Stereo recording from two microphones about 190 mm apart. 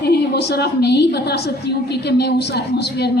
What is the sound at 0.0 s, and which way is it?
A woman's voice, 60° left (ahead or behind).